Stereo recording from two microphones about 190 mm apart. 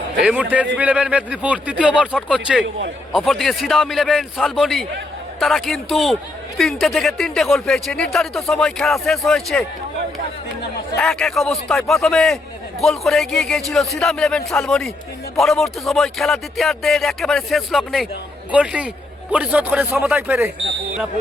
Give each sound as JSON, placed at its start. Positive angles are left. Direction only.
{"t": 0.2, "sound": "speech", "side_deg": -5}
{"t": 2.6, "sound": "a man's voice", "side_deg": -75}
{"t": 3.1, "sound": "speech", "side_deg": 0}
{"t": 10.9, "sound": "speech", "side_deg": 5}